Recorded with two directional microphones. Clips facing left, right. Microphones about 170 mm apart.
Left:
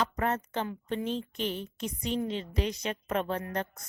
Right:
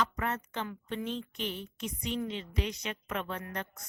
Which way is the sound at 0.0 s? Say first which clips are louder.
Left 3 dB; 35° left (ahead or behind).